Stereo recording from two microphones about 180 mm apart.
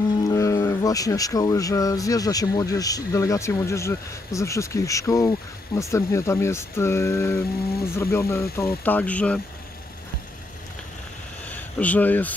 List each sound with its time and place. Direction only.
0.2 s speech: 20° left (ahead or behind)
11.5 s speech: 10° left (ahead or behind)